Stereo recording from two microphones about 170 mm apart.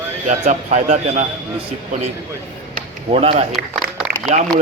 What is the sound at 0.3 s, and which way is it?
Speech, 45° right (ahead or behind).